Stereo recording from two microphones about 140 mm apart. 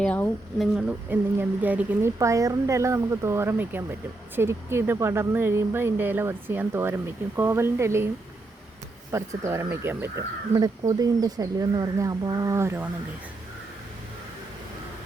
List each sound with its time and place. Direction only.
0.0 s a woman's voice: 10° left (ahead or behind)
0.8 s speech: 10° right (ahead or behind)
2.1 s speech: 25° right (ahead or behind)
9.1 s speech: 20° right (ahead or behind)
10.5 s speech: 25° right (ahead or behind)